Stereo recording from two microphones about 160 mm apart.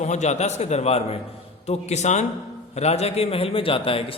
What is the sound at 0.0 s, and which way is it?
A man's voice, 45° left (ahead or behind).